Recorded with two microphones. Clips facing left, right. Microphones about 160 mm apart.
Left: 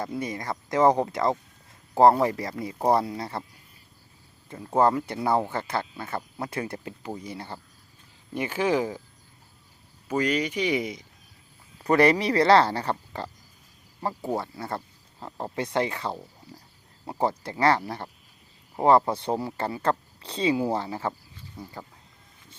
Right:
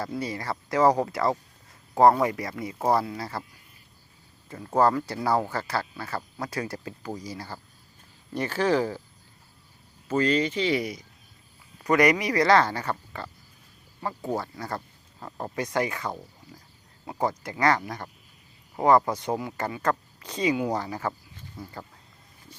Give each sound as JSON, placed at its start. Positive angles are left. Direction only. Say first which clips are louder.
{"t": 0.0, "sound": "speech", "louder": "even", "side_deg": 20}
{"t": 4.4, "sound": "speech", "louder": "even", "side_deg": 25}
{"t": 8.3, "sound": "speech", "louder": "right 1 dB", "side_deg": 15}
{"t": 10.1, "sound": "speech", "louder": "right 2 dB", "side_deg": 10}
{"t": 11.8, "sound": "speech", "louder": "left 1 dB", "side_deg": 30}